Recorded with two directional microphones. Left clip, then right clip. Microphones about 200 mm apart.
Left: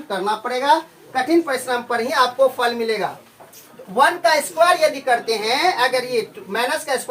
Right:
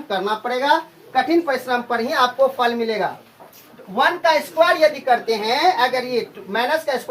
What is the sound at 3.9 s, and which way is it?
Speech, 15° left (ahead or behind).